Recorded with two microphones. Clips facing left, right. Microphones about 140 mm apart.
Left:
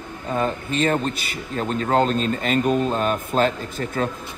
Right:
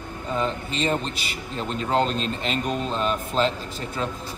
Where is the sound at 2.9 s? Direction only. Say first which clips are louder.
Left 3 dB; 50° left (ahead or behind).